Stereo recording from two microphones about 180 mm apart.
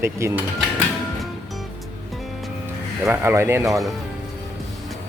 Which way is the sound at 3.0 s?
15° right (ahead or behind).